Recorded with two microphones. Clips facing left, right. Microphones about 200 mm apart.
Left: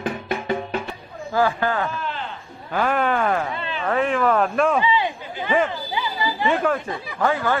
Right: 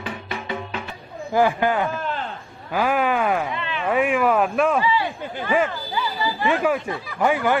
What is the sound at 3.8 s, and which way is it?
Speech, 10° right (ahead or behind).